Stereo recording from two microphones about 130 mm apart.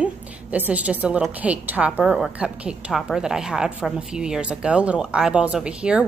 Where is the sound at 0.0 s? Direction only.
10° right (ahead or behind).